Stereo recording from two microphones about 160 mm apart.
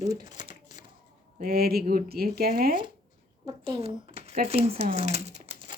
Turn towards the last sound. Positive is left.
turn(degrees=-40)  # may be behind; listen again after turning